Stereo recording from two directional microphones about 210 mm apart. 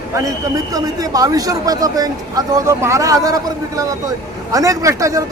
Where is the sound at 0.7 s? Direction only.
15° right (ahead or behind).